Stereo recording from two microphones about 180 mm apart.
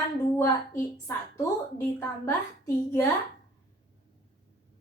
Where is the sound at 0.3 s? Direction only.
15° left (ahead or behind).